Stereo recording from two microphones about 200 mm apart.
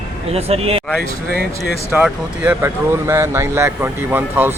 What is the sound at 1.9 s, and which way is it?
Speech, 5° right (ahead or behind).